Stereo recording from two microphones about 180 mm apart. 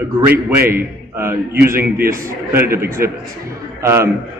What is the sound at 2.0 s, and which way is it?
Speech, 50° right (ahead or behind).